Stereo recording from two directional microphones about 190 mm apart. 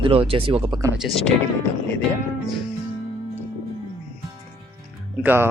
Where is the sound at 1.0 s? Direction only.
Centre (ahead or behind).